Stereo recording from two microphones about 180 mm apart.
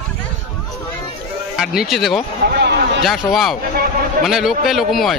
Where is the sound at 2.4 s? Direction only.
65° right (ahead or behind).